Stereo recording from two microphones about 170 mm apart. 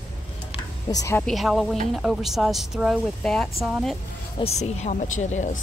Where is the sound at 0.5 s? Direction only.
20° left (ahead or behind).